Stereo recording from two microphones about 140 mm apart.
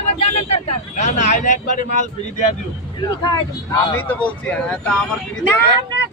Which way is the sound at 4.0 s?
10° left (ahead or behind).